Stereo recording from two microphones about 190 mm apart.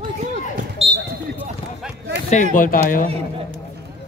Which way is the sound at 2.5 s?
45° left (ahead or behind).